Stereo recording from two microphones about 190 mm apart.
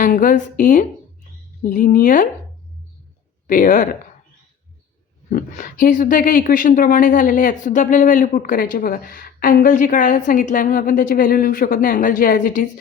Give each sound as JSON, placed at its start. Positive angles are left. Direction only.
{"t": 0.0, "sound": "a woman's voice", "side_deg": 45}
{"t": 3.4, "sound": "speech", "side_deg": 45}
{"t": 5.8, "sound": "speech", "side_deg": 45}